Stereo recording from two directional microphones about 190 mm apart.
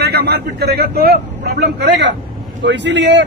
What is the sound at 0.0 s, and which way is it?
A man's voice, 60° right (ahead or behind).